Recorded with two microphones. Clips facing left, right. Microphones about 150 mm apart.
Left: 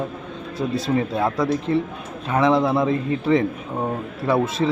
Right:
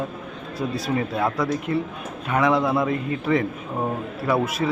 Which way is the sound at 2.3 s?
30° left (ahead or behind).